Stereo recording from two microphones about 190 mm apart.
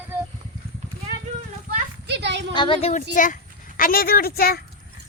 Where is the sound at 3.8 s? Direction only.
50° left (ahead or behind).